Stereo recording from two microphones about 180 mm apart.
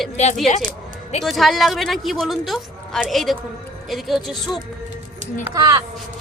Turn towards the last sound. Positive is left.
turn(degrees=-20)  # may be behind; listen again after turning